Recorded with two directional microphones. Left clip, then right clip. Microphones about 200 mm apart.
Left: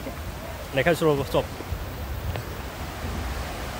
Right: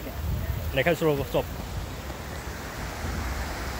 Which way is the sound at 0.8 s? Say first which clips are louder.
Left 2 dB; 20° left (ahead or behind).